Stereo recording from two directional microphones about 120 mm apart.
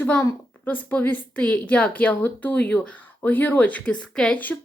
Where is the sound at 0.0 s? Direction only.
15° left (ahead or behind).